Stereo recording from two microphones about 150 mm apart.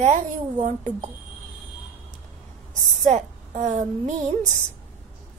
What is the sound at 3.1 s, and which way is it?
A woman's voice, 50° right (ahead or behind).